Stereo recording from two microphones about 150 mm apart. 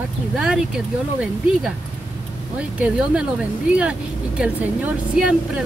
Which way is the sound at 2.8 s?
5° right (ahead or behind).